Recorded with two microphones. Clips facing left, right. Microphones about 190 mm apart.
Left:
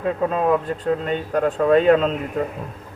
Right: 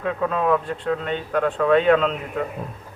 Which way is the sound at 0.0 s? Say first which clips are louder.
Left 2 dB; 30° left (ahead or behind).